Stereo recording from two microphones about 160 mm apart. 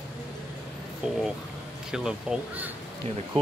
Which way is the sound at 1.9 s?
5° right (ahead or behind).